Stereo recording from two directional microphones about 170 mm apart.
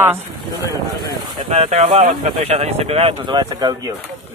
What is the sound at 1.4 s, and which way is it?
Speech, 40° right (ahead or behind).